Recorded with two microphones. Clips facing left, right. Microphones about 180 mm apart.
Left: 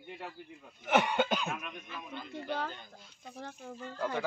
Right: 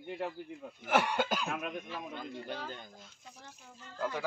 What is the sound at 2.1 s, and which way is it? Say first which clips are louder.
Speech: left 6 dB; 45° right (ahead or behind).